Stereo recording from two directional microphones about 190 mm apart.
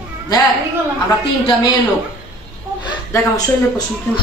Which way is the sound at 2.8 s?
20° left (ahead or behind).